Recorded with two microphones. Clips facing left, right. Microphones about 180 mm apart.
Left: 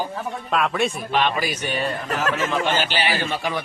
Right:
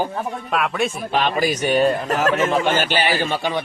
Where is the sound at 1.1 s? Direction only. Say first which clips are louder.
Right 4 dB; 40° right (ahead or behind).